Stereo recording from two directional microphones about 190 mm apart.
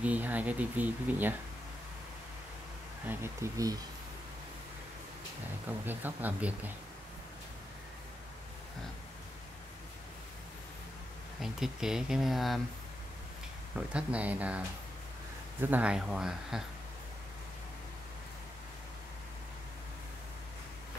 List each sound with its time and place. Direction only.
0.0 s speech: 10° right (ahead or behind)
3.1 s speech: 15° right (ahead or behind)
5.9 s speech: 10° right (ahead or behind)
11.4 s speech: centre (ahead or behind)
13.7 s speech: 5° right (ahead or behind)
15.6 s speech: 10° right (ahead or behind)